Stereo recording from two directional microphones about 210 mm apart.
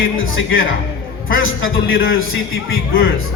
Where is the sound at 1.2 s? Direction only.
70° left (ahead or behind).